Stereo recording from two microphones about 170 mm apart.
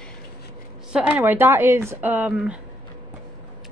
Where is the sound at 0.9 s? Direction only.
5° right (ahead or behind).